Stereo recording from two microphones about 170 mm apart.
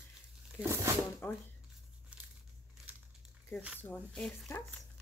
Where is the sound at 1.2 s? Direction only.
10° left (ahead or behind).